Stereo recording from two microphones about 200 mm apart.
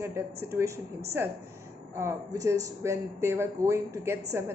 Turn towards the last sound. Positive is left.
turn(degrees=-15)  # may be behind; listen again after turning